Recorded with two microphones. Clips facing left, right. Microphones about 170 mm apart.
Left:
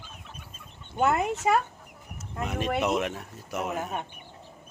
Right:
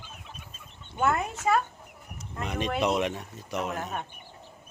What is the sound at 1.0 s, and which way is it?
Speech, 20° left (ahead or behind).